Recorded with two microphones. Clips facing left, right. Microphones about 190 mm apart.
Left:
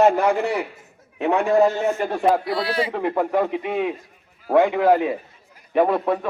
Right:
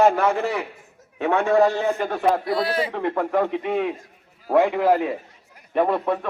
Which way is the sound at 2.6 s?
50° right (ahead or behind).